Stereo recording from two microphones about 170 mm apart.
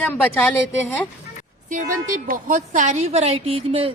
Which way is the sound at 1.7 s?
50° right (ahead or behind).